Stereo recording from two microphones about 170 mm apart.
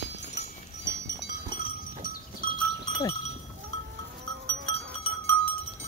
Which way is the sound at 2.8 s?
25° left (ahead or behind).